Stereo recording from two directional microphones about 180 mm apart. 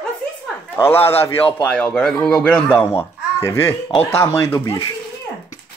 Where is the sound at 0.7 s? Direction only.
10° left (ahead or behind).